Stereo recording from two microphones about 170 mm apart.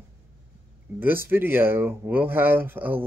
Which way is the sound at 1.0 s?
10° right (ahead or behind).